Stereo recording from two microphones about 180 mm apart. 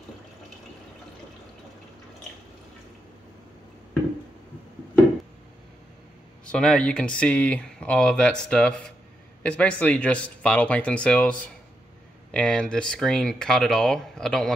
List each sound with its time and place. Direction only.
6.4 s speech: 5° left (ahead or behind)